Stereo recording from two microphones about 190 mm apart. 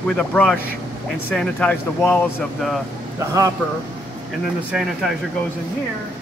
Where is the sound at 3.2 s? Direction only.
15° right (ahead or behind).